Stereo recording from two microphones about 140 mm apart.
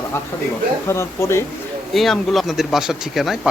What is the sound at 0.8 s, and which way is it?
Speech, 20° left (ahead or behind).